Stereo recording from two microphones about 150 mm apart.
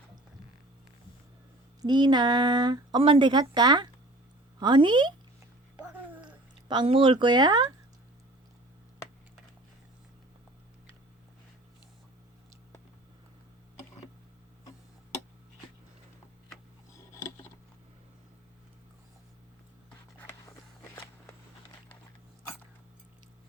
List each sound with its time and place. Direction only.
1.8 s speech: 30° right (ahead or behind)
6.2 s speech: 30° right (ahead or behind)